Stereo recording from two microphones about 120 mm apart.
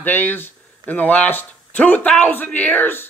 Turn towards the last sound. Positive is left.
turn(degrees=15)  # may be behind; listen again after turning